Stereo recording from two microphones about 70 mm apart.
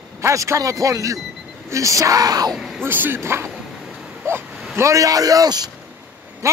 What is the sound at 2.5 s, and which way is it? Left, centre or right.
Speech, centre.